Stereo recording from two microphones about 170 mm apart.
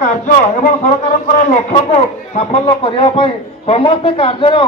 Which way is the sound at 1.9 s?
35° left (ahead or behind).